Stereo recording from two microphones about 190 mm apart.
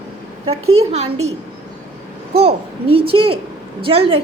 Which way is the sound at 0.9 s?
35° right (ahead or behind).